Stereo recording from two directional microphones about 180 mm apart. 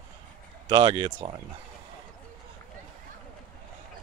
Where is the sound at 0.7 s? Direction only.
25° right (ahead or behind).